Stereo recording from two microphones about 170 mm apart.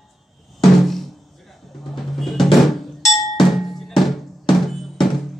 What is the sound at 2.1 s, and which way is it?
Drum, centre (ahead or behind).